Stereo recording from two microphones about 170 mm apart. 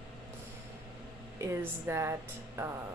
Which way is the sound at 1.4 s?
15° right (ahead or behind).